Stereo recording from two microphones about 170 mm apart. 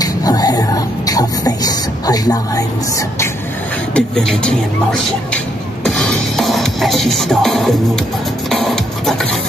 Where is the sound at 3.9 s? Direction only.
5° left (ahead or behind).